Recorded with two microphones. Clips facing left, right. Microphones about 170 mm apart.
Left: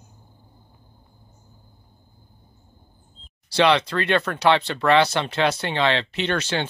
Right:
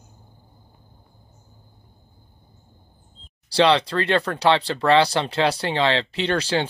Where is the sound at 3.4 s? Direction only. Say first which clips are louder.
Right 1 dB; 30° right (ahead or behind).